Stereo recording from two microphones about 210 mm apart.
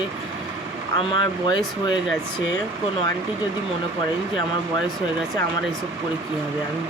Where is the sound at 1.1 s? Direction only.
20° left (ahead or behind).